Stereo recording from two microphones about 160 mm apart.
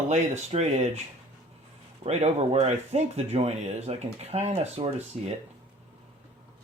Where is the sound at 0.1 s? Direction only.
45° right (ahead or behind).